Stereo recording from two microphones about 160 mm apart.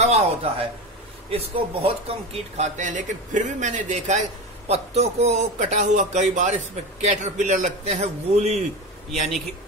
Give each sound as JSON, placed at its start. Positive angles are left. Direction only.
{"t": 0.0, "sound": "a man's voice", "side_deg": -40}